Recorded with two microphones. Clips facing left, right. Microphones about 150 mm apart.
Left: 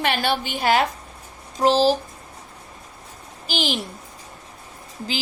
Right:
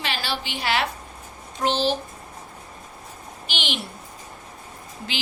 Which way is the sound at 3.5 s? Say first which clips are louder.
Left 6 dB; 40° left (ahead or behind).